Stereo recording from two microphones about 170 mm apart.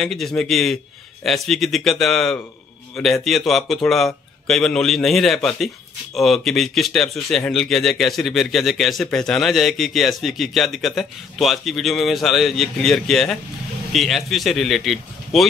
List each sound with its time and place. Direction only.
0.0 s speech: centre (ahead or behind)